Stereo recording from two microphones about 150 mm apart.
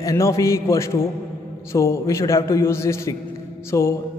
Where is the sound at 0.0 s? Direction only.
20° left (ahead or behind).